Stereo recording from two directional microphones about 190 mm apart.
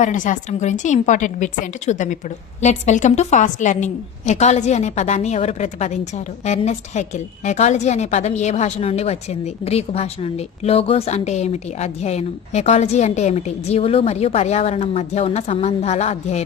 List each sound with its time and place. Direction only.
0.0 s a woman's voice: 40° left (ahead or behind)